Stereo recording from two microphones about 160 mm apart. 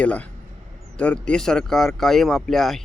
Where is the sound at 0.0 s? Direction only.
10° left (ahead or behind).